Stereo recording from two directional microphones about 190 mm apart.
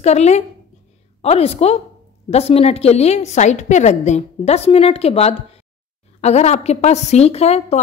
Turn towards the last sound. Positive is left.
turn(degrees=35)  # may be behind; listen again after turning